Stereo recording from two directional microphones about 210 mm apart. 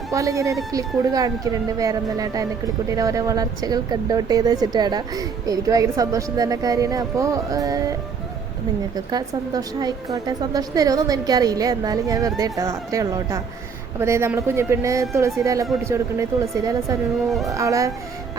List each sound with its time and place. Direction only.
0.1 s speech: 15° right (ahead or behind)
9.0 s speech: 20° right (ahead or behind)
17.2 s speech: centre (ahead or behind)
17.5 s speech: 15° right (ahead or behind)